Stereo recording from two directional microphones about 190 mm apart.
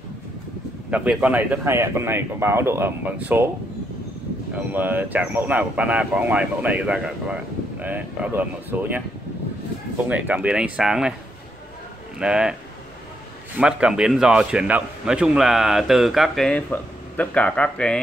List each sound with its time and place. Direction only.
0.8 s speech: 5° right (ahead or behind)
4.6 s speech: 10° right (ahead or behind)
10.0 s a man's voice: 10° right (ahead or behind)
12.2 s a man's voice: 5° right (ahead or behind)
13.6 s a man's voice: 5° right (ahead or behind)